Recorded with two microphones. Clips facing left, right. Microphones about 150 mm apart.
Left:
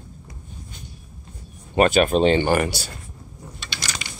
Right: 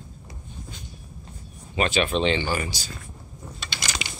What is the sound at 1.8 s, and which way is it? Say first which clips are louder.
Speech: left 7 dB; 50° left (ahead or behind).